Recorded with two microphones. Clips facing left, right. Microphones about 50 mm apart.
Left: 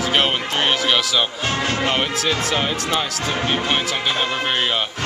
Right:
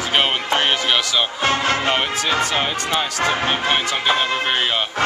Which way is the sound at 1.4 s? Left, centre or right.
Right.